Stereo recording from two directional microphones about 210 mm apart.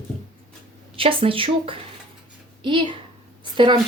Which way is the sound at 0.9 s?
25° right (ahead or behind).